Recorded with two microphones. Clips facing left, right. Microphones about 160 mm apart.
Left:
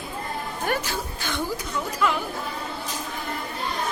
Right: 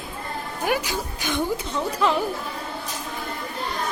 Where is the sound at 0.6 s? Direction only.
10° right (ahead or behind).